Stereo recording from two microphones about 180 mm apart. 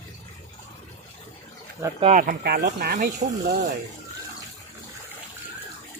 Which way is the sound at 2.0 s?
45° right (ahead or behind).